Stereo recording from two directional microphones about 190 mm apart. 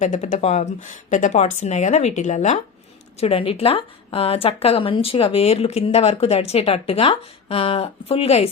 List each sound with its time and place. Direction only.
0.0 s a woman's voice: 40° left (ahead or behind)